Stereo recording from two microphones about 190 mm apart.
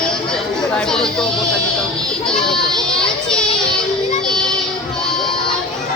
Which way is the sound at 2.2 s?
5° left (ahead or behind).